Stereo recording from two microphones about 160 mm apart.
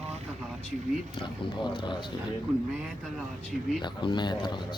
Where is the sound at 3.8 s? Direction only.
30° left (ahead or behind).